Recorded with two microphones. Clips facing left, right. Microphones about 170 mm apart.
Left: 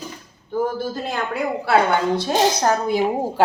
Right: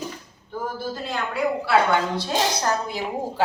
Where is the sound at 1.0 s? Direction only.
50° left (ahead or behind).